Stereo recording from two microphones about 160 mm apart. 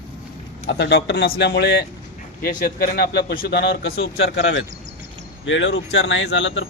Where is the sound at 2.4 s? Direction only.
65° left (ahead or behind); by 4.4 s 85° left.